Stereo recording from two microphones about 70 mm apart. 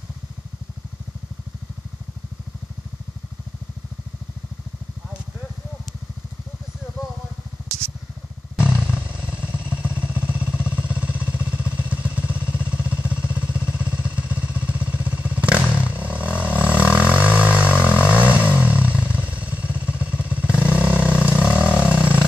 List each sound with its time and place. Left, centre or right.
9.4 s vehicle: centre